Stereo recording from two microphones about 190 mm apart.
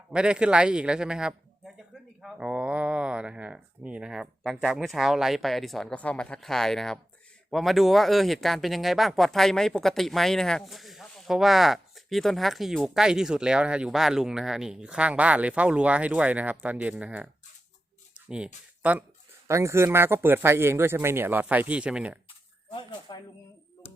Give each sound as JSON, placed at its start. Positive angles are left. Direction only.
{"t": 0.1, "sound": "speech", "side_deg": -5}
{"t": 18.3, "sound": "speech", "side_deg": -5}
{"t": 22.7, "sound": "speech", "side_deg": 25}